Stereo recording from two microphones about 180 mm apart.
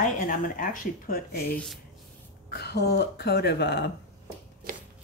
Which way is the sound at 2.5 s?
65° left (ahead or behind).